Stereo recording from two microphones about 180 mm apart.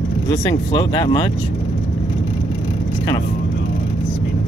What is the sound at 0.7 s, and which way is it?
Speech, 25° left (ahead or behind).